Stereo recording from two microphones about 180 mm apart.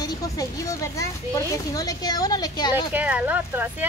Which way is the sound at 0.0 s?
20° left (ahead or behind).